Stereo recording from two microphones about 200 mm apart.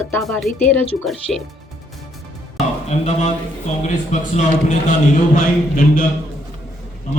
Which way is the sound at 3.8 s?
40° left (ahead or behind).